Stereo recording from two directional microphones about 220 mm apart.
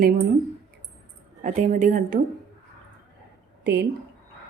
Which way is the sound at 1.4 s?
35° right (ahead or behind).